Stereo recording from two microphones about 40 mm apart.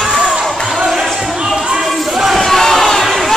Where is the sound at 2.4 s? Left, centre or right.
Centre.